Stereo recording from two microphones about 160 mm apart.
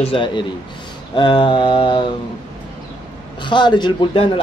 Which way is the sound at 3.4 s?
30° left (ahead or behind).